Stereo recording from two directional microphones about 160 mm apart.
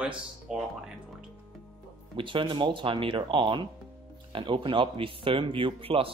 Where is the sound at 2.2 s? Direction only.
30° right (ahead or behind).